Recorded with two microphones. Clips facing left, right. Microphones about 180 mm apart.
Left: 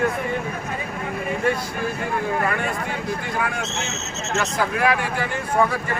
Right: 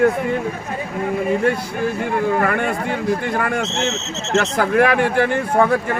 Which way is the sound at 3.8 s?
80° right.